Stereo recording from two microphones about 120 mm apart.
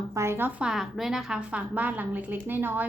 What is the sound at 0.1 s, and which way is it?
Speech, 20° right (ahead or behind).